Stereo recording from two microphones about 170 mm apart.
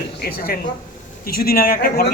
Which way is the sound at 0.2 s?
65° left (ahead or behind).